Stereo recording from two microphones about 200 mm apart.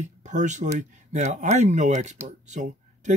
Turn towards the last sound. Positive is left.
turn(degrees=-35)  # may be behind; listen again after turning